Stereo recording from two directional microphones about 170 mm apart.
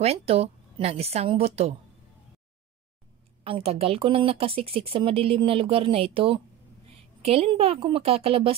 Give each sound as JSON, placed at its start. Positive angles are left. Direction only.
{"t": 0.0, "sound": "speech", "side_deg": -35}
{"t": 3.4, "sound": "speech", "side_deg": -35}
{"t": 6.9, "sound": "a sound", "side_deg": -35}
{"t": 7.8, "sound": "speech", "side_deg": -35}